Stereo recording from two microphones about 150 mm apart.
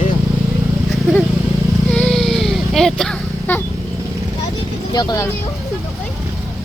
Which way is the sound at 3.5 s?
15° left (ahead or behind).